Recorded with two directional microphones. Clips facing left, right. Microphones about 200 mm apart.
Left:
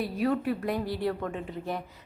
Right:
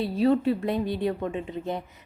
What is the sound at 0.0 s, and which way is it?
Speech, 25° right (ahead or behind).